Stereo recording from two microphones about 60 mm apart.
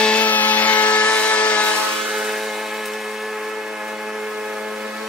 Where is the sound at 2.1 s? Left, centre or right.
Centre.